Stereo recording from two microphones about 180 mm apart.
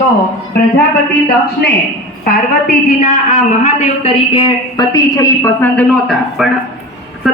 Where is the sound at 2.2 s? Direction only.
50° left (ahead or behind).